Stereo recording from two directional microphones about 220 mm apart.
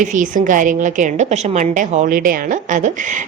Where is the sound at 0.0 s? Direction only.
35° right (ahead or behind).